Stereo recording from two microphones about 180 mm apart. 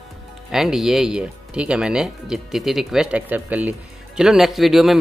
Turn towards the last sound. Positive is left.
turn(degrees=0)  # may be behind; listen again after turning